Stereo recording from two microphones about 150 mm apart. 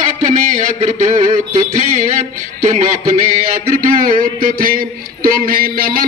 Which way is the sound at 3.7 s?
70° right (ahead or behind).